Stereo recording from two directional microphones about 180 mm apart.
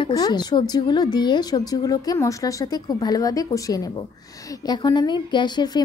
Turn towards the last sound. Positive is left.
turn(degrees=25)  # may be behind; listen again after turning